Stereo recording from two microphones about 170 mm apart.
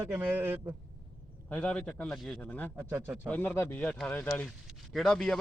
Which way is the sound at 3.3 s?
10° left (ahead or behind).